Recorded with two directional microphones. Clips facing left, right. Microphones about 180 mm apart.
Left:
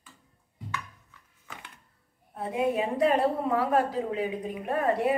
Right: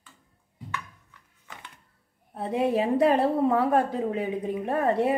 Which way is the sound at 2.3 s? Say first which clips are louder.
Right 3 dB; 30° right (ahead or behind).